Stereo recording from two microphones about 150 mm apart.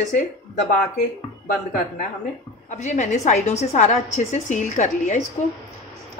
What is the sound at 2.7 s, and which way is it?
A woman's voice, 55° left (ahead or behind).